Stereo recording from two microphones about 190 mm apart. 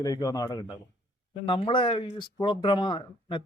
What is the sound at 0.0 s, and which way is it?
Speech, 20° left (ahead or behind).